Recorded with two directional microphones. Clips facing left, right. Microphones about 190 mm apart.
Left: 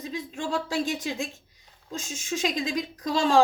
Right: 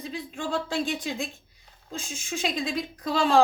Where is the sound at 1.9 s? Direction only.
40° left (ahead or behind).